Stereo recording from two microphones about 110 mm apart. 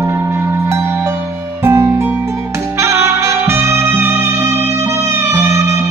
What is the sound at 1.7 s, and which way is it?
Music, 25° right (ahead or behind).